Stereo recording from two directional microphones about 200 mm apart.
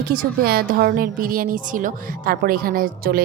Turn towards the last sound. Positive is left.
turn(degrees=-45)  # may be behind; listen again after turning